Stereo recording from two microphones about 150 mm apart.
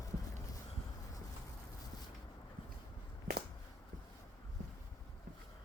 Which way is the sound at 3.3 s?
90° right.